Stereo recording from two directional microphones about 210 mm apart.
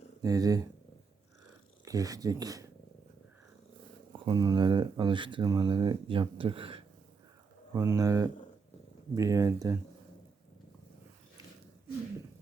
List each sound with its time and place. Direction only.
0.2 s speech: 15° right (ahead or behind)
1.8 s speech: 15° right (ahead or behind)
4.3 s speech: 20° right (ahead or behind)